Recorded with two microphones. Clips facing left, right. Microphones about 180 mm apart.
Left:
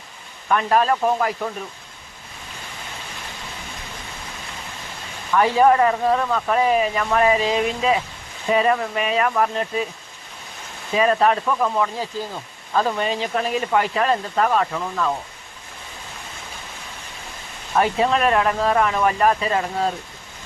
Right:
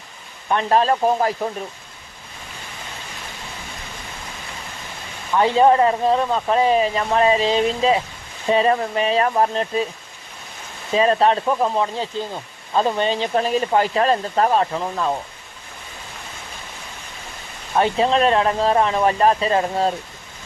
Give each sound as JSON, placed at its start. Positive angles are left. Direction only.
{"t": 0.4, "sound": "speech", "side_deg": -30}
{"t": 5.3, "sound": "speech", "side_deg": -25}
{"t": 10.9, "sound": "speech", "side_deg": -30}
{"t": 17.7, "sound": "speech", "side_deg": -25}